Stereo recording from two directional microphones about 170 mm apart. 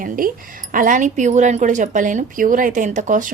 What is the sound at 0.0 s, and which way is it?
Speech, 55° right (ahead or behind).